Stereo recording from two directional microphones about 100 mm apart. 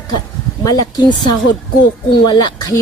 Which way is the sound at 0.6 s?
40° left (ahead or behind).